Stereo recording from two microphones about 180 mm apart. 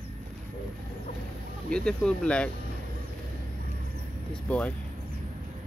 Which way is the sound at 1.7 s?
5° left (ahead or behind).